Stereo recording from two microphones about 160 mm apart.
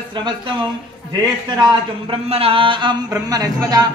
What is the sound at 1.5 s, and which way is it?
A man's voice, 25° right (ahead or behind).